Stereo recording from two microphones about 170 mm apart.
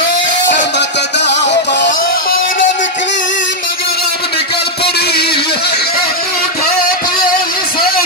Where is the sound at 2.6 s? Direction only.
90° left.